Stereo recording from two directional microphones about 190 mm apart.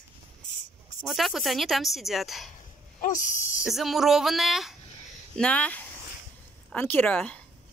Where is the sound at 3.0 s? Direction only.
45° left (ahead or behind).